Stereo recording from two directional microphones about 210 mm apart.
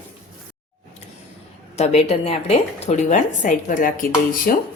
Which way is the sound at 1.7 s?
30° left (ahead or behind).